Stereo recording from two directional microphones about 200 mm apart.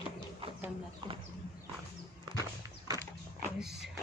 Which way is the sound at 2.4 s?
20° right (ahead or behind).